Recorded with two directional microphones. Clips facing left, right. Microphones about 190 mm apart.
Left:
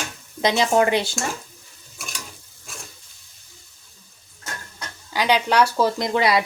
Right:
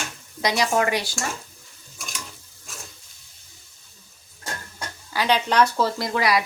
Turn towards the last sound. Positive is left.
turn(degrees=25)  # may be behind; listen again after turning